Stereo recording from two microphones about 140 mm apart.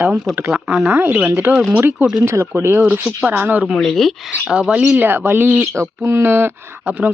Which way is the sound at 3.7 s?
5° left (ahead or behind).